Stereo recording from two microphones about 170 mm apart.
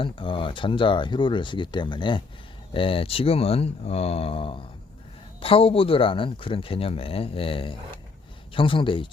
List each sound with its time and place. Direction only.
0.0 s speech: 30° left (ahead or behind)